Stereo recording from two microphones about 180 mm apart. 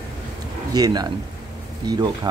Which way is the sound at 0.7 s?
20° right (ahead or behind).